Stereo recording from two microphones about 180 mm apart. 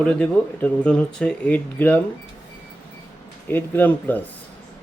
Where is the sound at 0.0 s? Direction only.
5° left (ahead or behind).